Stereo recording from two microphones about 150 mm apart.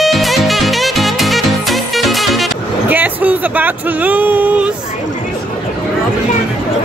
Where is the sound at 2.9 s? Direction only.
10° right (ahead or behind).